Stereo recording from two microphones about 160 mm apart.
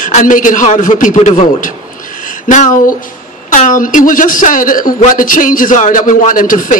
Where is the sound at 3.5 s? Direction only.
55° left (ahead or behind).